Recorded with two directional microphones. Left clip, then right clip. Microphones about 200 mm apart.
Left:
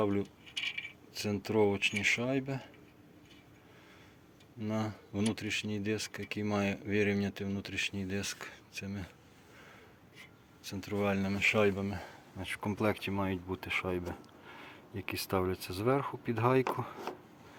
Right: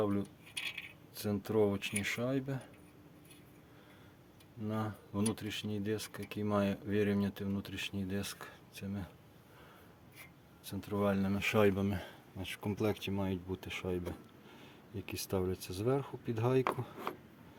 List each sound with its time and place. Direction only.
0.0 s speech: 5° left (ahead or behind)
4.6 s speech: 5° right (ahead or behind)
10.6 s speech: 5° right (ahead or behind)
11.5 s speech: 30° right (ahead or behind)
12.4 s speech: 5° right (ahead or behind)